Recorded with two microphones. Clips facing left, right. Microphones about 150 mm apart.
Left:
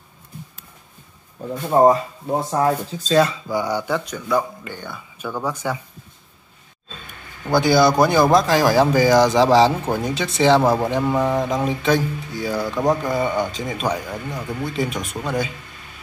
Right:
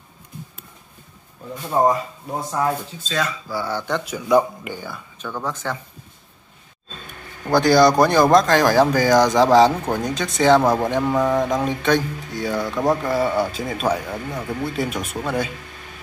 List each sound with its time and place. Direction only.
1.7 s speech: 25° left (ahead or behind)
3.4 s speech: 15° left (ahead or behind)
4.3 s speech: 15° right (ahead or behind)
5.2 s speech: 10° left (ahead or behind)
7.5 s speech: 5° left (ahead or behind)